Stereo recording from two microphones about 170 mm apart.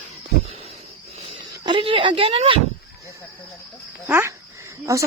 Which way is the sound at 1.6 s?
30° right (ahead or behind).